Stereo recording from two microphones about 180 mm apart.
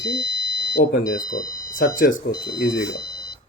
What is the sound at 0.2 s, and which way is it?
Smoke detector, 20° left (ahead or behind).